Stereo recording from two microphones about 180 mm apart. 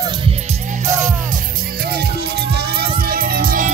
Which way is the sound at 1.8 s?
60° right (ahead or behind).